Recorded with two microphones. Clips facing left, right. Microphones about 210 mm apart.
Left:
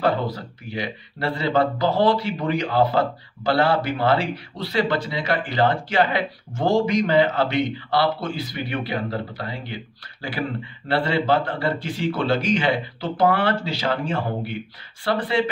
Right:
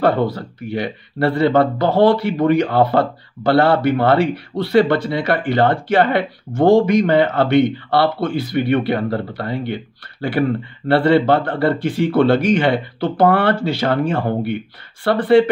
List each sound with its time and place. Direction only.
0.0 s speech: 55° right (ahead or behind)
10.9 s speech: 60° right (ahead or behind)